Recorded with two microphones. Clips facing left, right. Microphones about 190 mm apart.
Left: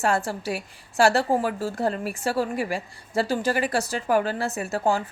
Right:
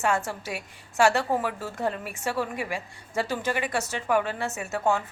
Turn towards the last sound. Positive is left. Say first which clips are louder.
# left 2 dB
turn(degrees=35)  # may be behind; listen again after turning